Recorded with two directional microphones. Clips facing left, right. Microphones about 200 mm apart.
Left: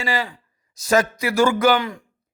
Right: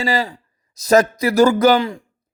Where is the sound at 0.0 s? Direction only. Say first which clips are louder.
Right 4 dB; 35° right (ahead or behind).